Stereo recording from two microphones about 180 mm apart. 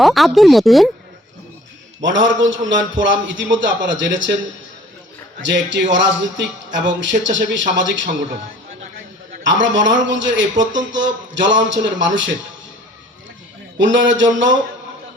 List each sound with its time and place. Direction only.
0.0 s speech: centre (ahead or behind)
2.0 s a man's voice: 90° right
5.4 s a man's voice: 85° right
9.5 s a man's voice: 90° right
13.7 s a man's voice: 90° right